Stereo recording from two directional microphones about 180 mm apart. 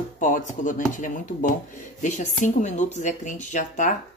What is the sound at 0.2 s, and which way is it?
Speech, 45° left (ahead or behind).